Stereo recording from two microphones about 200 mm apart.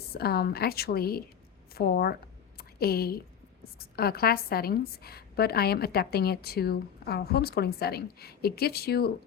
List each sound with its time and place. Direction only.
0.1 s a woman's voice: 50° left (ahead or behind)
2.6 s a sound: 50° left (ahead or behind)
3.6 s a woman's voice: 50° left (ahead or behind)